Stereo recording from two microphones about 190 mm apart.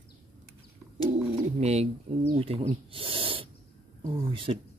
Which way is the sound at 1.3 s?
35° right (ahead or behind).